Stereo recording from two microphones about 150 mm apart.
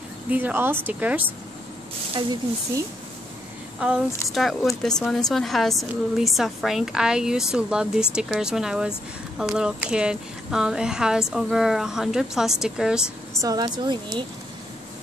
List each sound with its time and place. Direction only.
0.3 s a woman's voice: 10° right (ahead or behind)
3.8 s a woman's voice: 5° right (ahead or behind)
13.4 s speech: 25° right (ahead or behind)